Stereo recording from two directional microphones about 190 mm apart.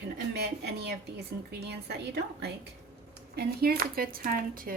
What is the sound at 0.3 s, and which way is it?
Speech, 60° right (ahead or behind).